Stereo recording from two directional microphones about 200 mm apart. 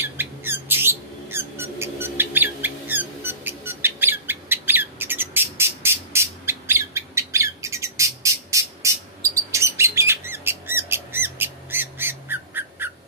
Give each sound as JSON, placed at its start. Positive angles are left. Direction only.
{"t": 0.0, "sound": "squeak", "side_deg": -10}